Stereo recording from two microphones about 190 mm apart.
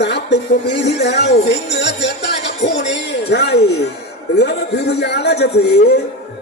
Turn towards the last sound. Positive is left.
turn(degrees=60)  # may be behind; listen again after turning